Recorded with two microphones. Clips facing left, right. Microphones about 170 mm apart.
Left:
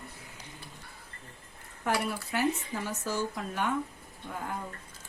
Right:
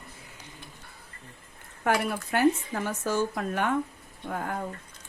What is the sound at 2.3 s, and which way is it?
Speech, 55° right (ahead or behind).